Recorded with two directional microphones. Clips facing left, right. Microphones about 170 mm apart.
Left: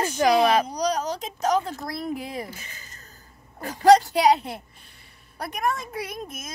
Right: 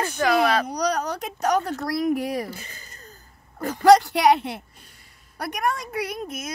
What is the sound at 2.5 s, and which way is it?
Speech, 35° right (ahead or behind).